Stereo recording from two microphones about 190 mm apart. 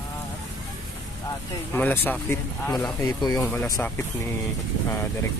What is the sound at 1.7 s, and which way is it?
Speech, 10° left (ahead or behind).